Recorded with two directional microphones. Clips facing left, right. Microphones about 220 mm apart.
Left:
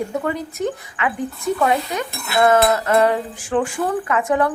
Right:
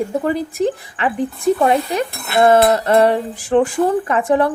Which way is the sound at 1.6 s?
30° right (ahead or behind).